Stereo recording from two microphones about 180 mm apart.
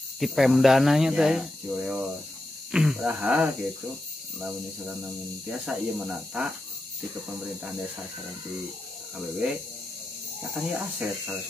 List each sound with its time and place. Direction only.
0.2 s speech: centre (ahead or behind)
10.5 s speech: 10° right (ahead or behind)